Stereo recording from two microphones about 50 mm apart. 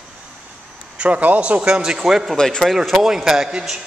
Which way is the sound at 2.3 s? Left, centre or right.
Centre.